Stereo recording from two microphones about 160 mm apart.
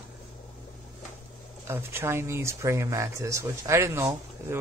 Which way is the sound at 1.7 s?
15° right (ahead or behind).